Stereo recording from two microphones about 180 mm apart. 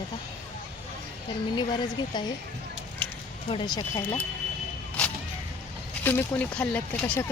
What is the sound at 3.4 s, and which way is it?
Speech, 25° left (ahead or behind).